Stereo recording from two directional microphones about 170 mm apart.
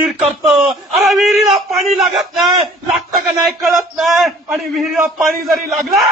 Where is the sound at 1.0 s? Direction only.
Centre (ahead or behind).